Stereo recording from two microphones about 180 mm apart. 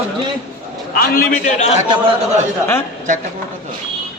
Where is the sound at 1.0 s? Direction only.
55° left (ahead or behind).